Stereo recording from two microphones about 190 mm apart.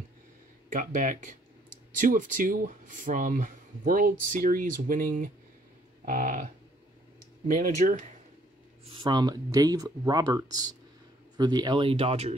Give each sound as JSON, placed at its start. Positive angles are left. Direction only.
{"t": 0.7, "sound": "speech", "side_deg": -40}
{"t": 8.8, "sound": "speech", "side_deg": -25}